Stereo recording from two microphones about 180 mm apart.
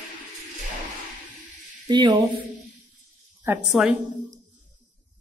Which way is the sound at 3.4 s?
5° right (ahead or behind).